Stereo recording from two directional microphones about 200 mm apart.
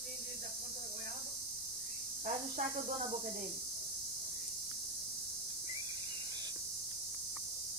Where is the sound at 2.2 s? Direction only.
40° right (ahead or behind).